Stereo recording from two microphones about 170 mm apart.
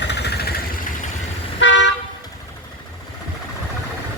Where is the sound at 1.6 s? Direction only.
90° left.